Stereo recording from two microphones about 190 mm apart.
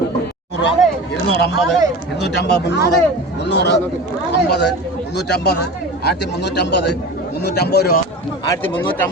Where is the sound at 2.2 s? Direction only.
60° left (ahead or behind).